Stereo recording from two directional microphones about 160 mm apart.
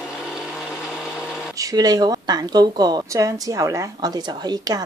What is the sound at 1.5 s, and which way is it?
A woman's voice, 20° right (ahead or behind).